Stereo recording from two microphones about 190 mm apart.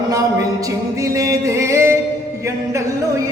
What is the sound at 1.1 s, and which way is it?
Music, 15° right (ahead or behind).